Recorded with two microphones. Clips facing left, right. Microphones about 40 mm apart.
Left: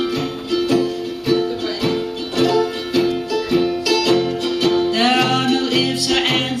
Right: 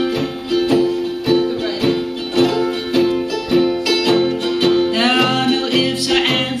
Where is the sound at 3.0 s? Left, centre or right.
Right.